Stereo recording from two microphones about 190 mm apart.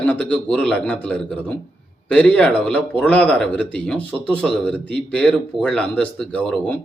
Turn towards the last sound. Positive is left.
turn(degrees=5)  # may be behind; listen again after turning